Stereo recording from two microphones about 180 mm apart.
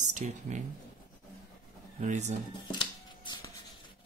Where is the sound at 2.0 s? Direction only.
40° right (ahead or behind).